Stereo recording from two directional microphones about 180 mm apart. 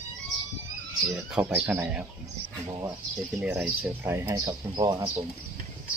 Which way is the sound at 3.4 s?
10° right (ahead or behind).